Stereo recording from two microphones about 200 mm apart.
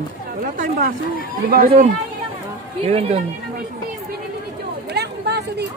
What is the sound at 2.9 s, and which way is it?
Speech, 30° right (ahead or behind).